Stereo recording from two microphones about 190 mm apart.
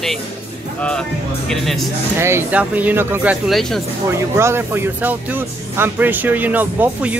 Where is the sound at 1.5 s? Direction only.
Centre (ahead or behind).